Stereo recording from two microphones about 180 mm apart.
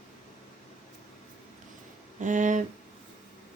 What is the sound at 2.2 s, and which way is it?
Speech, 45° right (ahead or behind).